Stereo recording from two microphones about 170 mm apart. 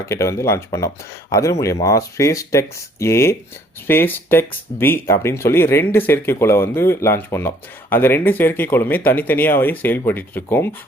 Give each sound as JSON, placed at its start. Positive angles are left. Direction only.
{"t": 0.0, "sound": "speech", "side_deg": 15}